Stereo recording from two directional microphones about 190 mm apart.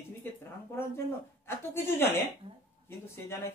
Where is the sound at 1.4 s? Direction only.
10° left (ahead or behind).